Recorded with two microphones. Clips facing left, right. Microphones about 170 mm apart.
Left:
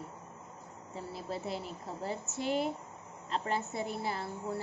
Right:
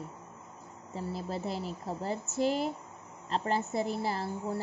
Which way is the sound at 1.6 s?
35° right (ahead or behind).